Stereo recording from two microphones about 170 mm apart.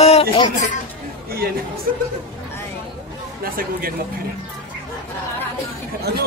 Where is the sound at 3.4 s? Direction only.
60° right (ahead or behind).